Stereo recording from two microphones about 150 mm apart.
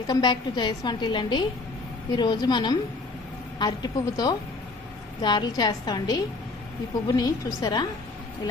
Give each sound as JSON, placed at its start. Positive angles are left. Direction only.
{"t": 0.1, "sound": "a woman's voice", "side_deg": 30}